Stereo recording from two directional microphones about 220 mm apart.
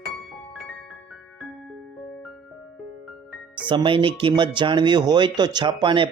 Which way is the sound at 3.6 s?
20° right (ahead or behind).